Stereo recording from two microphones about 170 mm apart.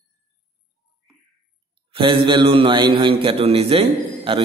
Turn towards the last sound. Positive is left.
turn(degrees=-35)  # may be behind; listen again after turning